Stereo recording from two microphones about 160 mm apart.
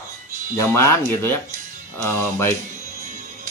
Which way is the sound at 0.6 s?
15° left (ahead or behind).